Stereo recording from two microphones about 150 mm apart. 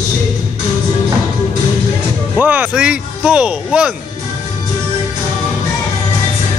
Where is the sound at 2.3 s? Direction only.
10° right (ahead or behind).